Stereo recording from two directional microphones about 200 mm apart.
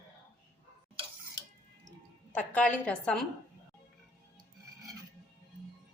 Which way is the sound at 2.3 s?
5° left (ahead or behind).